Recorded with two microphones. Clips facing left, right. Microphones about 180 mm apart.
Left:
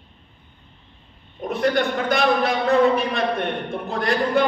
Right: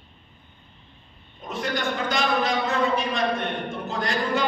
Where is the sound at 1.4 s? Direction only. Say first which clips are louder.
Left 8 dB; 60° left (ahead or behind).